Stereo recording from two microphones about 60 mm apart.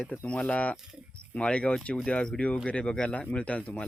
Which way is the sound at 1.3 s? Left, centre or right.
Left.